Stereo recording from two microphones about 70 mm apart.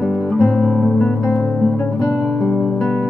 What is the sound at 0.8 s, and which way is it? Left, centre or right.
Music, centre.